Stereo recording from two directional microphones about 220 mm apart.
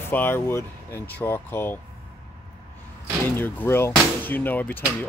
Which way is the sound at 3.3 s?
10° left (ahead or behind).